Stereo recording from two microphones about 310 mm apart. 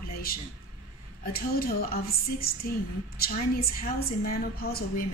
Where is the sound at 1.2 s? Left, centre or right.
Left.